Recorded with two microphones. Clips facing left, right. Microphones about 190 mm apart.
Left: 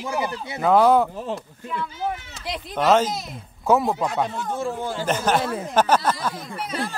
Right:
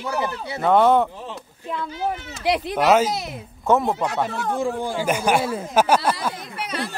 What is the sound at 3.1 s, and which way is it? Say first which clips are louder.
Speech: right 3 dB; 75° right (ahead or behind).